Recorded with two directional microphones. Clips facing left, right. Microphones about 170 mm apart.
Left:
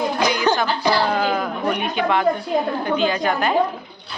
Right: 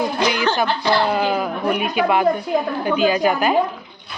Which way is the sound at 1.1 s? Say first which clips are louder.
Right 1 dB; 10° right (ahead or behind).